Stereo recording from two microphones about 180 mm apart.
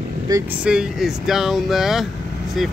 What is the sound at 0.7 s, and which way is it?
Speech, 5° right (ahead or behind).